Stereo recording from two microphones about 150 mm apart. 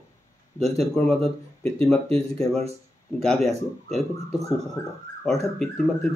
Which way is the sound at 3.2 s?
5° left (ahead or behind).